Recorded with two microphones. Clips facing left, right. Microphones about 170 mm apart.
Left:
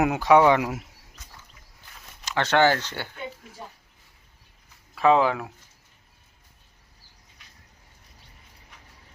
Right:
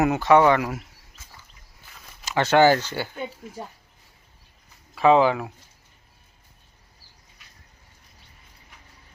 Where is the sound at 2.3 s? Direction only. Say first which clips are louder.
Right 4 dB; 5° right (ahead or behind).